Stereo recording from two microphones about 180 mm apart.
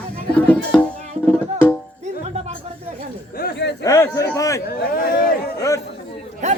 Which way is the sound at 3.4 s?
70° left (ahead or behind).